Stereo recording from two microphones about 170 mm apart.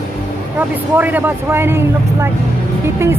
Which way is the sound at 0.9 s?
10° right (ahead or behind).